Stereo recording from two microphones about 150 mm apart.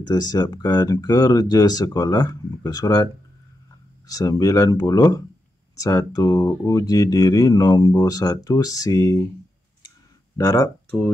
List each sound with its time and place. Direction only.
0.1 s speech: 25° left (ahead or behind)
4.1 s speech: 25° left (ahead or behind)
9.8 s clicking: 25° left (ahead or behind)